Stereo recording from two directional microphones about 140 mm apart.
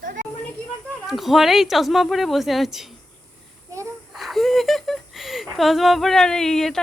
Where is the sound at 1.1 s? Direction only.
Centre (ahead or behind).